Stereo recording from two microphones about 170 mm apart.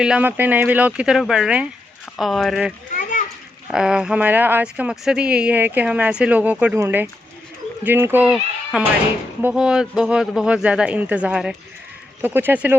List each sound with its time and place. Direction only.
0.0 s speech: 10° right (ahead or behind)
2.9 s children playing: 50° left (ahead or behind)
3.7 s speech: 5° right (ahead or behind)